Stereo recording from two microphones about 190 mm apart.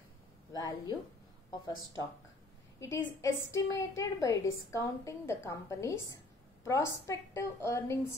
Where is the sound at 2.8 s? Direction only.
15° left (ahead or behind).